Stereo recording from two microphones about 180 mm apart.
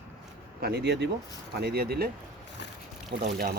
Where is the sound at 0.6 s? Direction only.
65° right (ahead or behind).